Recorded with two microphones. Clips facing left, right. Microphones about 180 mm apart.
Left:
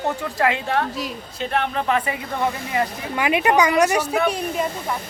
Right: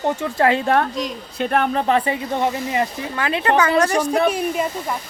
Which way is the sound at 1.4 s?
50° right (ahead or behind).